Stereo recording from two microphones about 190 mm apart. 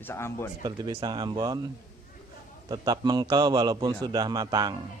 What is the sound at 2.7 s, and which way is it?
A man's voice, 20° right (ahead or behind).